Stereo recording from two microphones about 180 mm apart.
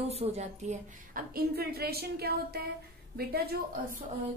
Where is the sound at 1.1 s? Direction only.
55° right (ahead or behind).